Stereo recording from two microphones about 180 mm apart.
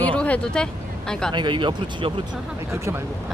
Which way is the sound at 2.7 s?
15° right (ahead or behind).